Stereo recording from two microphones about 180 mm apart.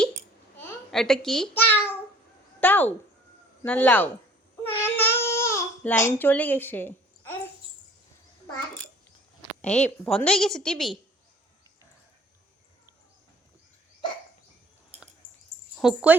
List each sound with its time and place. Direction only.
0.9 s babbling: centre (ahead or behind)
2.6 s a sound: 10° left (ahead or behind)
3.6 s speech: 10° left (ahead or behind)
4.8 s baby cry: 15° left (ahead or behind)
9.6 s a woman's voice: 5° left (ahead or behind)
14.9 s a sound: 35° right (ahead or behind)
15.8 s a woman's voice: 5° right (ahead or behind)